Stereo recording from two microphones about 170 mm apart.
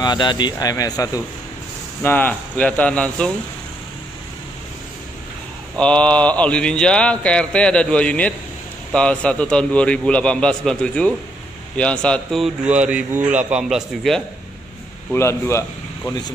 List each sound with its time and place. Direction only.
0.0 s speech: 25° left (ahead or behind)
2.0 s speech: 10° left (ahead or behind)
5.8 s a man's voice: 5° left (ahead or behind)
15.1 s speech: 15° left (ahead or behind)